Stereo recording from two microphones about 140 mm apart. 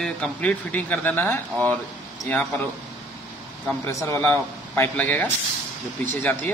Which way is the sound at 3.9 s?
20° left (ahead or behind).